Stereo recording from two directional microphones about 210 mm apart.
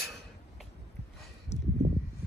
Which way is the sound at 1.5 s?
30° left (ahead or behind).